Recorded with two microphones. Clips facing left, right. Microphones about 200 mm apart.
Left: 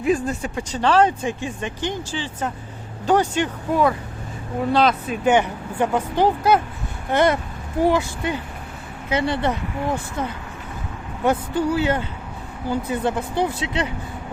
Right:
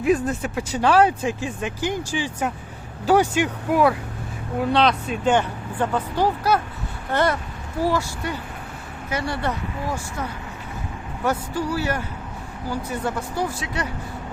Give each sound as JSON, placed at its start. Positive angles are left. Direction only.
{"t": 0.0, "sound": "speech", "side_deg": 0}
{"t": 4.6, "sound": "speech", "side_deg": 0}